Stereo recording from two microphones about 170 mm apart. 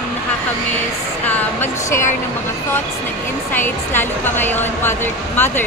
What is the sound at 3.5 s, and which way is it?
A woman's voice, 10° left (ahead or behind).